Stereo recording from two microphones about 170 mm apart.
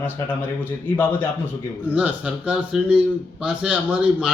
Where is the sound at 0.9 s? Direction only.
10° left (ahead or behind).